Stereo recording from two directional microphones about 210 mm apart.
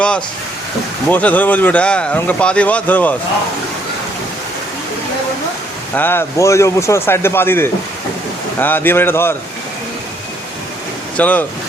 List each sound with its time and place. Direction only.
1.1 s speech: 5° left (ahead or behind)
5.9 s speech: 10° left (ahead or behind)
11.2 s speech: 5° left (ahead or behind)